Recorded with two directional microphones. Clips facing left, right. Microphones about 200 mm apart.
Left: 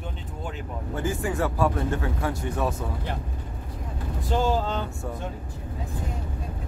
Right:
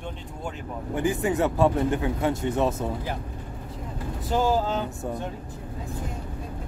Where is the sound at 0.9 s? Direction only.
20° right (ahead or behind).